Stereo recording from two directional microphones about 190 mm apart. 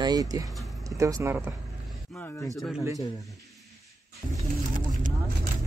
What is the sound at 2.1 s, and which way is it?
Speech, 10° left (ahead or behind).